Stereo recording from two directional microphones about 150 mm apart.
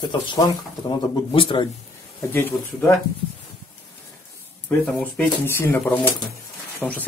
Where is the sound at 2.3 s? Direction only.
15° left (ahead or behind).